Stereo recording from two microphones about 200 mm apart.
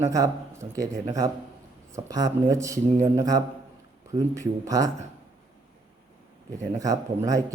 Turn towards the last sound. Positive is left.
turn(degrees=-15)  # may be behind; listen again after turning